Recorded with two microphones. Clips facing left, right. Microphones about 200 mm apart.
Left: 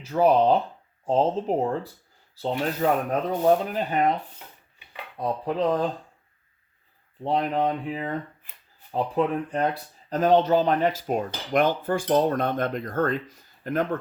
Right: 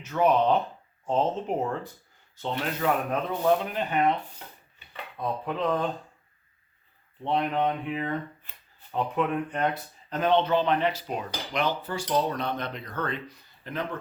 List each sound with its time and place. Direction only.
0.0 s speech: 35° left (ahead or behind)
7.3 s speech: 35° left (ahead or behind)
10.1 s cutlery: 40° left (ahead or behind)